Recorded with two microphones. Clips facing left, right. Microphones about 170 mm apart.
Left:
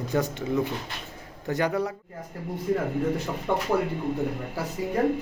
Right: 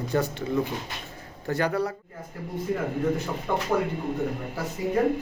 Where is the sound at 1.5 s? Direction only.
20° left (ahead or behind).